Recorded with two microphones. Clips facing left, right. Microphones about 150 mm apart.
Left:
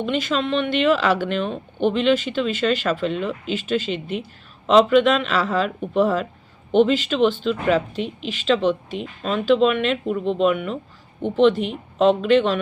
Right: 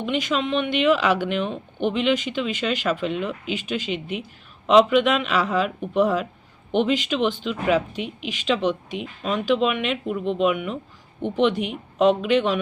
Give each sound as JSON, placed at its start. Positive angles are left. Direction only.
{"t": 0.0, "sound": "speech", "side_deg": -15}